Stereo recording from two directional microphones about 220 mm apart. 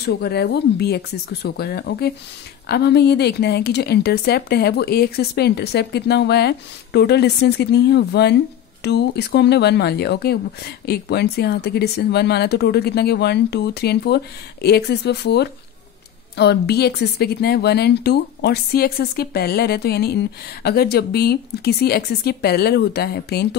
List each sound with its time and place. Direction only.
0.0 s a woman's voice: 45° left (ahead or behind)